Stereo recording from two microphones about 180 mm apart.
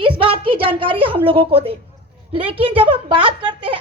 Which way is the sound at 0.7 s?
30° right (ahead or behind).